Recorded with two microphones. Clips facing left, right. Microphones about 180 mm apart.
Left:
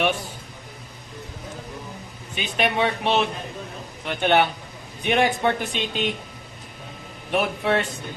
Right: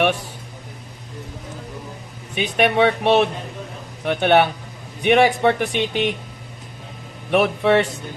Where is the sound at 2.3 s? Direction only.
65° right (ahead or behind).